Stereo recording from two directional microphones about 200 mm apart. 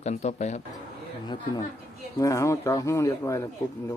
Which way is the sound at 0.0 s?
35° left (ahead or behind).